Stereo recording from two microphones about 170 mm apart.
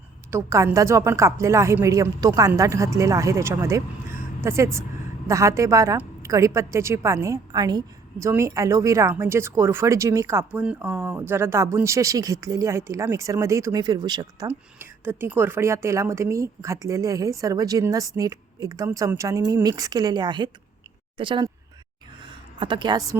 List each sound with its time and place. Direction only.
0.3 s speech: 15° right (ahead or behind)
14.4 s speech: 15° right (ahead or behind); by 21.5 s 30° right (ahead or behind)
22.5 s speech: 30° right (ahead or behind)